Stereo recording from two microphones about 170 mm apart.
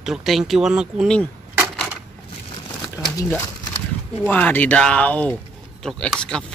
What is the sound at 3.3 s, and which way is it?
Speech, 10° left (ahead or behind).